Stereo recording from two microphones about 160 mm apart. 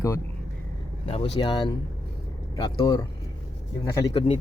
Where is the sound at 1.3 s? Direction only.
30° left (ahead or behind).